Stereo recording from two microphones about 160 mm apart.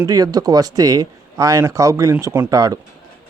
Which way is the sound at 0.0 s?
20° right (ahead or behind).